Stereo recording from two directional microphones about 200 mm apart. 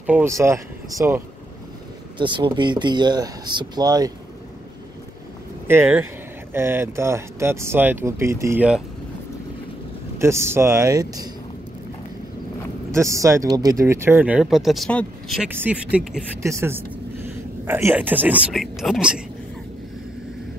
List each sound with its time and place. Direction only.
0.0 s speech: 10° right (ahead or behind)
5.7 s speech: 10° right (ahead or behind)
10.1 s speech: 15° right (ahead or behind)
12.9 s speech: 15° right (ahead or behind); by 15.4 s 5° left (ahead or behind)
15.5 s speech: 10° right (ahead or behind)